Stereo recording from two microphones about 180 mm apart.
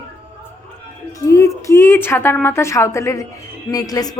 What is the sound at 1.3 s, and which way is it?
A woman's voice, 15° left (ahead or behind).